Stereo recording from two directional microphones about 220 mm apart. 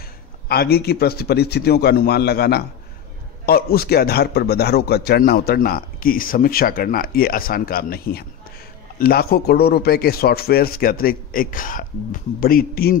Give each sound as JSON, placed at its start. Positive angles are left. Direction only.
{"t": 0.5, "sound": "a man's voice", "side_deg": 45}